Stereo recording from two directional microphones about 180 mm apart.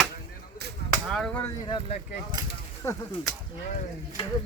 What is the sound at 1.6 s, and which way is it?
Speech, 25° left (ahead or behind).